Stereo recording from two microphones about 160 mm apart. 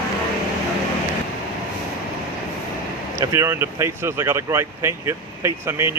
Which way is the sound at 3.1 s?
15° right (ahead or behind).